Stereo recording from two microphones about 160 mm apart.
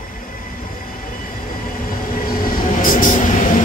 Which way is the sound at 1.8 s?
65° left (ahead or behind).